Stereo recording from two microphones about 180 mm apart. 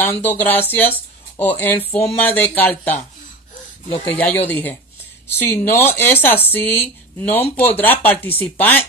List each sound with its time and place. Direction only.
0.0 s speech: 10° left (ahead or behind)
3.9 s speech: 30° left (ahead or behind)
4.2 s speech: 10° left (ahead or behind)